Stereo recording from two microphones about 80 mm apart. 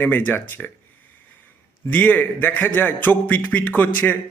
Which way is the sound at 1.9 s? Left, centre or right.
Left.